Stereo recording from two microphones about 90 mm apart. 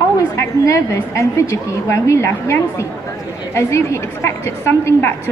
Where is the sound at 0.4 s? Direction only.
30° left (ahead or behind).